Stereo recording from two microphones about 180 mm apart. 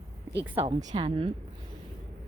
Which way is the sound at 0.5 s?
30° right (ahead or behind).